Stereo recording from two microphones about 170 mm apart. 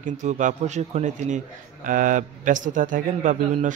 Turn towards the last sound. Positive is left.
turn(degrees=-50)  # may be behind; listen again after turning